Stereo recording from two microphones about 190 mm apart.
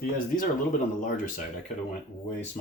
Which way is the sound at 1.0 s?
45° left (ahead or behind).